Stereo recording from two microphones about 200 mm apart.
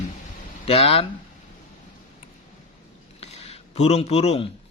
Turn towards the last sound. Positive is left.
turn(degrees=30)  # may be behind; listen again after turning